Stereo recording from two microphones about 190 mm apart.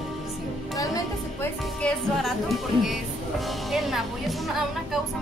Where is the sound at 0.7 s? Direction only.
15° left (ahead or behind).